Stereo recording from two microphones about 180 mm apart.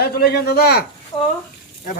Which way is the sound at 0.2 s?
65° left (ahead or behind).